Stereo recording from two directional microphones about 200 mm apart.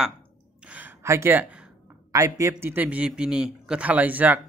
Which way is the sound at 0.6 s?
10° right (ahead or behind).